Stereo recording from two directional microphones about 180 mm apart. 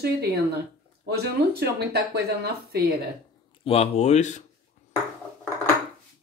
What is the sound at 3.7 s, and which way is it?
Speech, 35° left (ahead or behind).